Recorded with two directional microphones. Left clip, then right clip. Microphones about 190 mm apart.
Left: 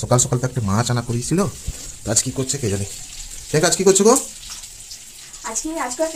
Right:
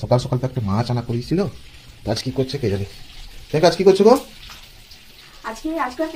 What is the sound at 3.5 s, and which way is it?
Speech, 20° left (ahead or behind).